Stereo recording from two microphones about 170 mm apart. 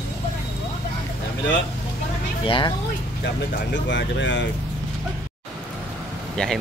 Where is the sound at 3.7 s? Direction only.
90° left.